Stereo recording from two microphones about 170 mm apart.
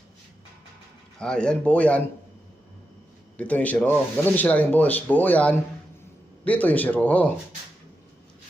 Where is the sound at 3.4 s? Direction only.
10° left (ahead or behind).